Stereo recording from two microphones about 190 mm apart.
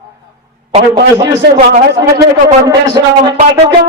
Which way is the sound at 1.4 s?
60° right (ahead or behind).